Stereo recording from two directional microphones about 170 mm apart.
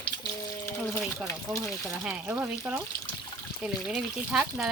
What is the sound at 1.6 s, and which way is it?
Speech, 5° right (ahead or behind).